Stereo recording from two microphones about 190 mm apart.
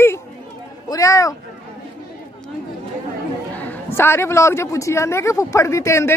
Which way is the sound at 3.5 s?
10° left (ahead or behind).